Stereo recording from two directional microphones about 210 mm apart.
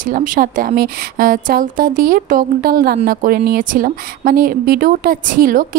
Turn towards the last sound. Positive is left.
turn(degrees=-40)  # may be behind; listen again after turning